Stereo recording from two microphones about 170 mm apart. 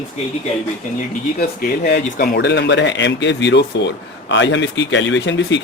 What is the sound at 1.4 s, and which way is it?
Speech, 60° left (ahead or behind).